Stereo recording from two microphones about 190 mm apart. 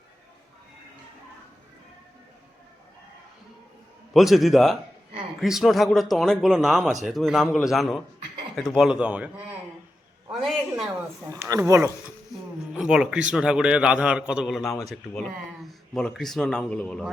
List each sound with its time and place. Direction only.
4.1 s a man's voice: centre (ahead or behind)
10.4 s a man's voice: centre (ahead or behind)
11.3 s speech: 15° right (ahead or behind)
12.7 s a man's voice: 5° right (ahead or behind)